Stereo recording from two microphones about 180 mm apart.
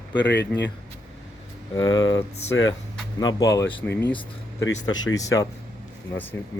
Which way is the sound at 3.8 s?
10° left (ahead or behind).